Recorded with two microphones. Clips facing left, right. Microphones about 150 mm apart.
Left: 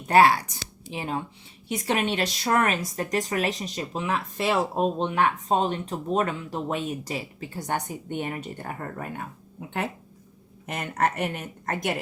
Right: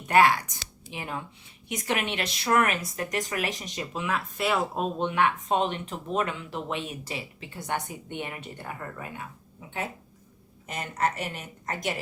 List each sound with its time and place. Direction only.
0.1 s speech: 35° left (ahead or behind)
5.0 s speech: 35° left (ahead or behind); by 11.9 s 55° left (ahead or behind)